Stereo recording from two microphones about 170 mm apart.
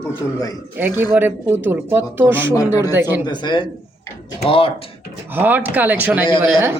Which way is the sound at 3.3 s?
25° left (ahead or behind).